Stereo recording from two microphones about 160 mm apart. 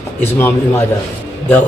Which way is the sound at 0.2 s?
15° left (ahead or behind).